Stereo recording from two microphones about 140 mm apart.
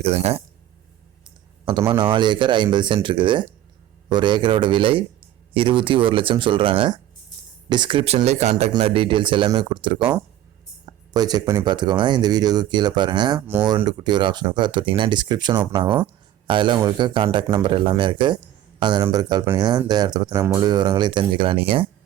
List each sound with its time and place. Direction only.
0.0 s speech: 50° right (ahead or behind)
1.9 s speech: 35° right (ahead or behind); by 8.7 s 50° right (ahead or behind)
8.8 s speech: 40° right (ahead or behind)